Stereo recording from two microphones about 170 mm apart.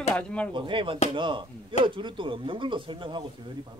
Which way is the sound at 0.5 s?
30° right (ahead or behind).